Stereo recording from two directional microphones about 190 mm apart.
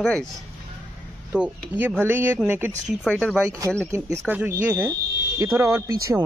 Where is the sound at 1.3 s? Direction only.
5° right (ahead or behind).